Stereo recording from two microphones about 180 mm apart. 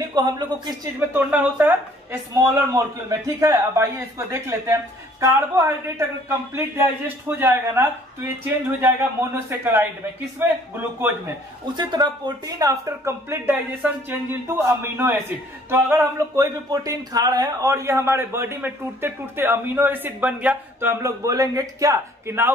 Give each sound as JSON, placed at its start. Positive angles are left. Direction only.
{"t": 0.1, "sound": "speech", "side_deg": -25}
{"t": 1.1, "sound": "a man's voice", "side_deg": -10}
{"t": 11.7, "sound": "a man's voice", "side_deg": -25}